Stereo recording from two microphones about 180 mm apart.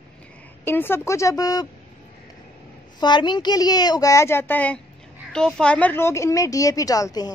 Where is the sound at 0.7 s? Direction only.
10° left (ahead or behind).